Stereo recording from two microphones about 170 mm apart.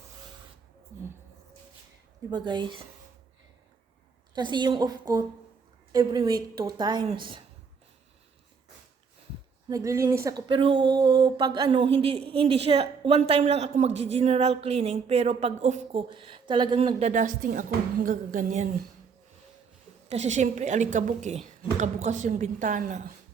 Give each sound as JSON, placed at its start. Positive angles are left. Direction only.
{"t": 2.3, "sound": "a woman's voice", "side_deg": -25}
{"t": 4.4, "sound": "a woman's voice", "side_deg": -25}
{"t": 9.6, "sound": "a woman's voice", "side_deg": -20}
{"t": 17.1, "sound": "a woman's voice", "side_deg": -50}
{"t": 20.1, "sound": "a woman's voice", "side_deg": -40}